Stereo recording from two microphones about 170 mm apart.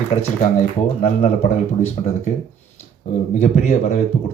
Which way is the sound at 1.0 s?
40° left (ahead or behind).